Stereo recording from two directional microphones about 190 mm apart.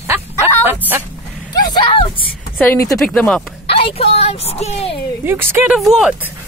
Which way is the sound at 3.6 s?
30° left (ahead or behind).